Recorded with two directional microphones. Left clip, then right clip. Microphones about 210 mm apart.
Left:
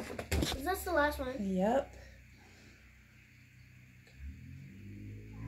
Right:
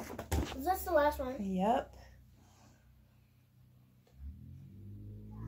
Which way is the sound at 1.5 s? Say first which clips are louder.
Even; 15° right (ahead or behind).